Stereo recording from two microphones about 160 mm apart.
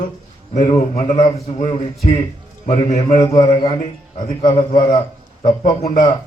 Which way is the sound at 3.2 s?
25° left (ahead or behind).